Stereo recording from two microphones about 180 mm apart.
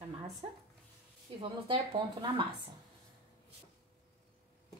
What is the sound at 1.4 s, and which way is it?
Speech, 30° right (ahead or behind).